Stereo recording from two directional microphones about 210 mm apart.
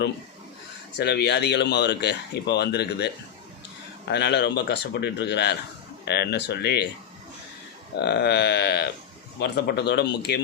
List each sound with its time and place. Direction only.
0.9 s speech: 50° left (ahead or behind)
4.1 s speech: 55° left (ahead or behind)
7.9 s speech: 50° left (ahead or behind)